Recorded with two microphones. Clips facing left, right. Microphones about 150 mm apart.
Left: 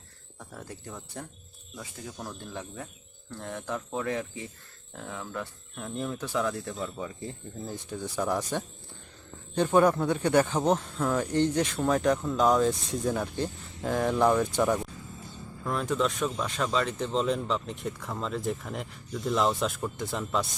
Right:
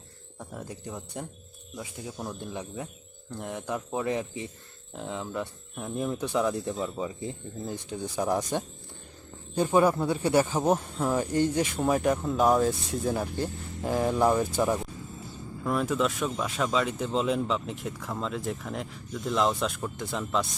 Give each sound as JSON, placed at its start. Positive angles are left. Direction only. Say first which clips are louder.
{"t": 0.3, "sound": "speech", "louder": "right 3 dB", "side_deg": -15}